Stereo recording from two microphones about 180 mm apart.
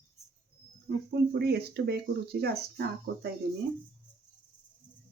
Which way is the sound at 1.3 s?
65° right (ahead or behind).